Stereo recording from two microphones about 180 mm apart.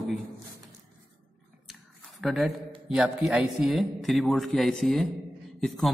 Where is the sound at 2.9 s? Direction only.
5° right (ahead or behind).